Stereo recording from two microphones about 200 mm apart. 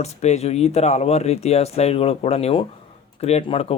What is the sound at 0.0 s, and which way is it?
Speech, 35° left (ahead or behind).